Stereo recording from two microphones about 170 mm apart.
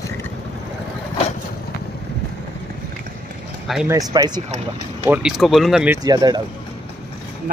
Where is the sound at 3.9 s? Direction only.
20° right (ahead or behind).